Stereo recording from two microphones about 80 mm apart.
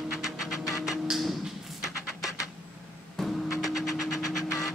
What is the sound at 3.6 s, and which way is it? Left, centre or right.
Vehicle, centre.